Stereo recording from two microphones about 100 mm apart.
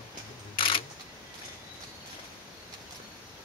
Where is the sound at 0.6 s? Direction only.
65° left (ahead or behind).